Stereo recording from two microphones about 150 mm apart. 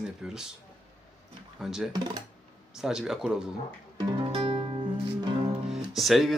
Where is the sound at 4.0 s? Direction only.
35° right (ahead or behind).